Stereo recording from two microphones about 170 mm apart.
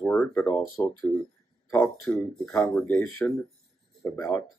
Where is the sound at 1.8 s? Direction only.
5° left (ahead or behind).